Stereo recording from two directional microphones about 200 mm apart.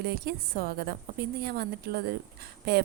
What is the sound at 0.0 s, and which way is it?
A woman's voice, 50° right (ahead or behind).